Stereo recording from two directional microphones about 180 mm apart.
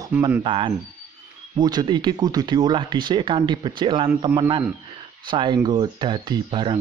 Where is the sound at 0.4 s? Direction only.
30° right (ahead or behind).